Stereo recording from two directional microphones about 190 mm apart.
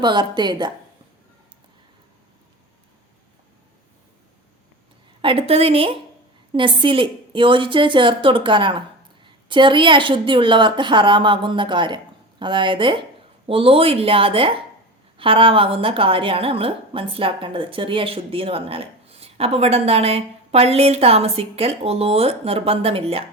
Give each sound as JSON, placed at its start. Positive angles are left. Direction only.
{"t": 0.0, "sound": "a woman's voice", "side_deg": -25}
{"t": 5.2, "sound": "a woman's voice", "side_deg": -30}